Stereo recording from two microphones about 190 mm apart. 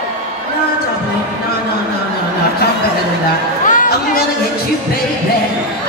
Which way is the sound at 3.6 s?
45° left (ahead or behind).